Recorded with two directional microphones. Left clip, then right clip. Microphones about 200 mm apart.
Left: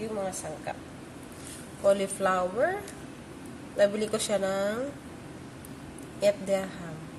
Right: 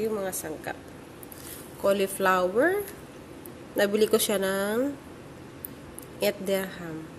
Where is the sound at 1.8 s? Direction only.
40° right (ahead or behind).